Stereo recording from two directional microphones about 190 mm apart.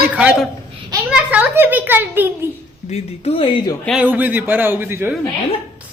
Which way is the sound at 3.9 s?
10° right (ahead or behind).